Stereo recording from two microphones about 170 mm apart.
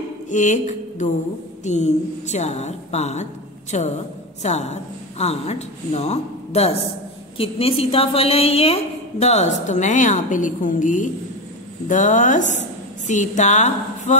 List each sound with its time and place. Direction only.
0.3 s a woman's voice: 45° left (ahead or behind)